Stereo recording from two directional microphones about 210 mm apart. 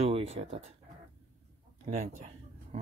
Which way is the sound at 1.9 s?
30° right (ahead or behind).